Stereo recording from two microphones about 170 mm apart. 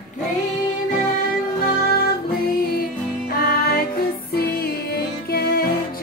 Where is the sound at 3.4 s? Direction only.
60° left (ahead or behind).